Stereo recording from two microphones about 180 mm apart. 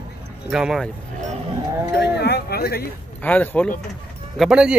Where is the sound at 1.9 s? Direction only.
70° left (ahead or behind).